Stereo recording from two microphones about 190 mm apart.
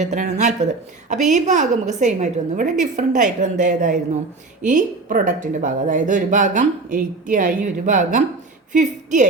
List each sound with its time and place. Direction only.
0.0 s a woman's voice: 40° right (ahead or behind)